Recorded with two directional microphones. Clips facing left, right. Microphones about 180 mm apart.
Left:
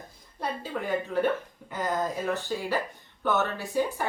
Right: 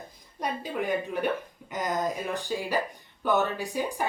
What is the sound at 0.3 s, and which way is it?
Speech, 15° right (ahead or behind).